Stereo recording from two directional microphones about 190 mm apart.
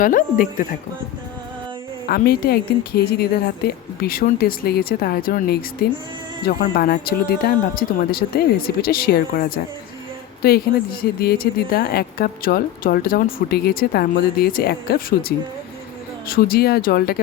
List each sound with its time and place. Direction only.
0.0 s speech: 45° left (ahead or behind)
2.0 s speech: 55° left (ahead or behind)